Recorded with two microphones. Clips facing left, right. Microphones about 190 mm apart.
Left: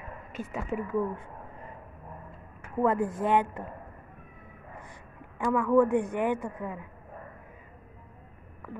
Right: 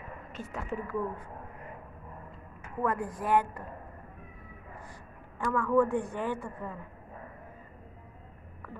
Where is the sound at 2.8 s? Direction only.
25° left (ahead or behind).